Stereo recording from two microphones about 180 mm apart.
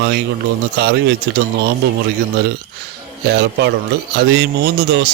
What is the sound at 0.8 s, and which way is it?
Speech, 70° right (ahead or behind).